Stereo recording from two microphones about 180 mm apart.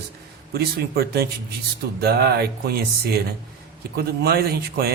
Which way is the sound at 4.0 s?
60° right (ahead or behind).